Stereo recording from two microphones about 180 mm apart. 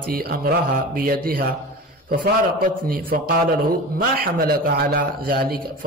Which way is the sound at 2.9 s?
55° right (ahead or behind).